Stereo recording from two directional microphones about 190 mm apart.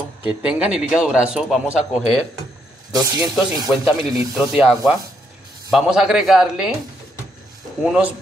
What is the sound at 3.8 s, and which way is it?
Speech, centre (ahead or behind).